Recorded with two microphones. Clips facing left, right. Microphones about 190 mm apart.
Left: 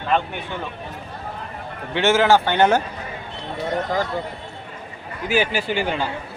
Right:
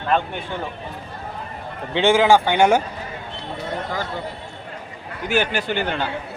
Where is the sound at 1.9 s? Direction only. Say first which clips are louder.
Right 1 dB; 15° right (ahead or behind).